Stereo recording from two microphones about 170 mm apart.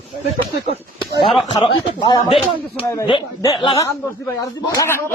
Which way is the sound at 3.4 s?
20° left (ahead or behind).